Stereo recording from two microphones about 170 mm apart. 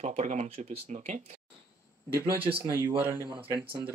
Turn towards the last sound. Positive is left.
turn(degrees=-10)  # may be behind; listen again after turning